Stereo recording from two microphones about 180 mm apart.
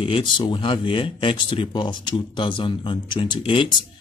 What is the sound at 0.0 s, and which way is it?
Speech, 30° left (ahead or behind).